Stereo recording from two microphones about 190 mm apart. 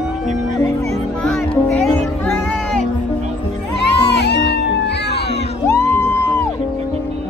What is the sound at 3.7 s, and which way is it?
Music, 65° left (ahead or behind).